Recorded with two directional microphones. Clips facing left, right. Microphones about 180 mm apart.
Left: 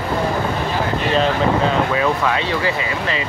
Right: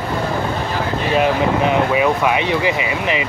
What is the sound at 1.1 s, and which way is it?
Speech, 15° right (ahead or behind).